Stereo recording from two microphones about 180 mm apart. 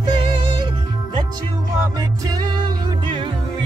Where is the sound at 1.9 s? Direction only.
20° right (ahead or behind).